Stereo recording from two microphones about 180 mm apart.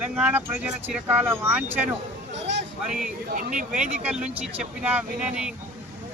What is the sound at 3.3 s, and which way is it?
Speech, 45° right (ahead or behind).